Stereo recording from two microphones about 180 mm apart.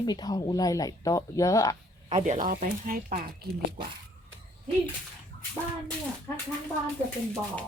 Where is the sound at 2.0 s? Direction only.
40° right (ahead or behind).